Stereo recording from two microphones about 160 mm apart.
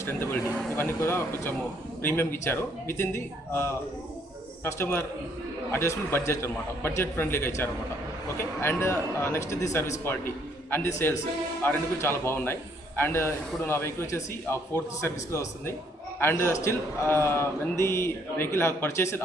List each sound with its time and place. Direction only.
0.0 s speech: 15° left (ahead or behind)